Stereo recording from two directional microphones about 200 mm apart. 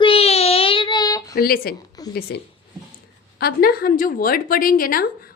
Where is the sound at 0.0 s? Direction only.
30° left (ahead or behind).